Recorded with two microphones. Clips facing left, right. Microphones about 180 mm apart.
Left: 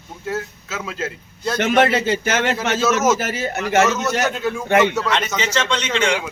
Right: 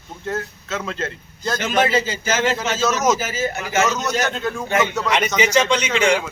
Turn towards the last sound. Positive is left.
turn(degrees=-5)  # may be behind; listen again after turning